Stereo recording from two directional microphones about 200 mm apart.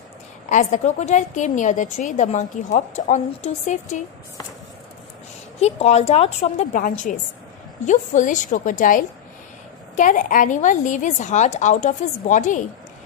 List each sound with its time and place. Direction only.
0.5 s a woman's voice: 40° left (ahead or behind)
5.6 s a woman's voice: 30° left (ahead or behind)
6.7 s a woman's voice: 40° left (ahead or behind)